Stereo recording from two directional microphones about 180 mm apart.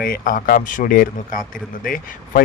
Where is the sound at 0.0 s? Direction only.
50° left (ahead or behind).